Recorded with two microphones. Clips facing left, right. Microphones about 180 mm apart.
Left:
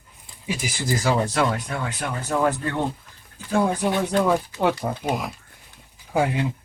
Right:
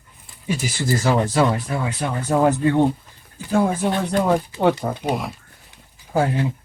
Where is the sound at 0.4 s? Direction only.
10° left (ahead or behind).